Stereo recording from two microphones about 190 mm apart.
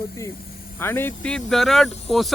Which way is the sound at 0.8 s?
10° left (ahead or behind).